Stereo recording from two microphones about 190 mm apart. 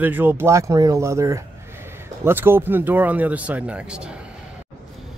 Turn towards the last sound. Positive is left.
turn(degrees=-5)  # may be behind; listen again after turning